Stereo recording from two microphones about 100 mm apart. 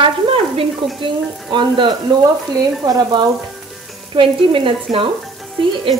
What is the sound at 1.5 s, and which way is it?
Frying, 50° right (ahead or behind).